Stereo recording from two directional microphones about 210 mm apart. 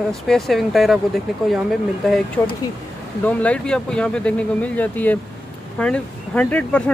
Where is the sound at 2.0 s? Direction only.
Centre (ahead or behind).